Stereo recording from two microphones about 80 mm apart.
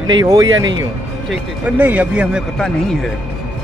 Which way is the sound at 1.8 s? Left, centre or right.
Centre.